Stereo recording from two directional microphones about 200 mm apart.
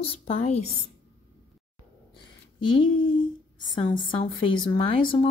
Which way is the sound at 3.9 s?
25° left (ahead or behind).